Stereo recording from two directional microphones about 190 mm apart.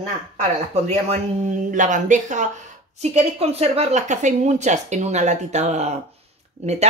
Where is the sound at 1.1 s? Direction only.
40° right (ahead or behind).